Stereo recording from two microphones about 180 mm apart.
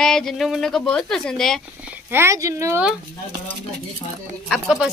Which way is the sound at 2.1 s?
15° right (ahead or behind).